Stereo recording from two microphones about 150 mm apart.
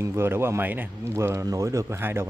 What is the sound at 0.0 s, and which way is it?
A man's voice, 15° right (ahead or behind).